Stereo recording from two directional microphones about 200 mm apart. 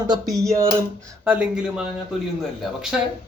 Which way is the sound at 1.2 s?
5° right (ahead or behind).